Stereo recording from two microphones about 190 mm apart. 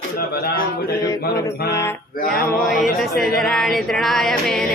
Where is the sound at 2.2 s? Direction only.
50° left (ahead or behind).